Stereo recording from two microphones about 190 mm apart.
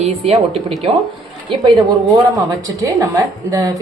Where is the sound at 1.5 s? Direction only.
20° right (ahead or behind).